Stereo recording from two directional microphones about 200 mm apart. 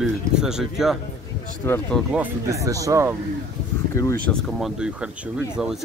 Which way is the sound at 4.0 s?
15° left (ahead or behind).